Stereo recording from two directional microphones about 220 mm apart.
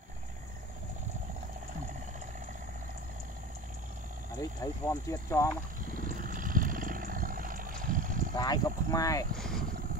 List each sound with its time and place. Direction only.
4.4 s speech: 15° left (ahead or behind)
5.9 s a sound: 40° right (ahead or behind)
8.4 s speech: 15° left (ahead or behind)
9.4 s speech: centre (ahead or behind)